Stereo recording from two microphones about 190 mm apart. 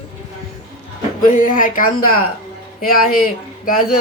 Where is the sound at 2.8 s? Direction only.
50° left (ahead or behind).